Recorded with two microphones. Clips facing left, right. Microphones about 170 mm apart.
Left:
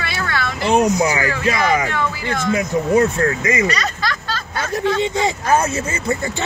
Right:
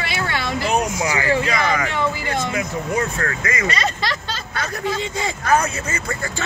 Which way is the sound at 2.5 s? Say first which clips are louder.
Left 7 dB; 25° left (ahead or behind).